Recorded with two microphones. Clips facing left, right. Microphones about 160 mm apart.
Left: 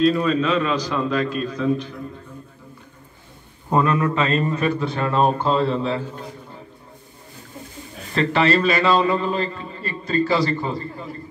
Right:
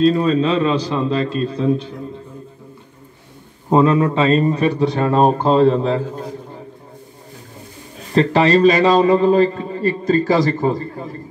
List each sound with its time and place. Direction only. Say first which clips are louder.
0.0 s a man's voice: right 4 dB; 30° right (ahead or behind)
3.7 s a man's voice: right 5 dB; 25° right (ahead or behind)
8.1 s a man's voice: right 5 dB; 35° right (ahead or behind)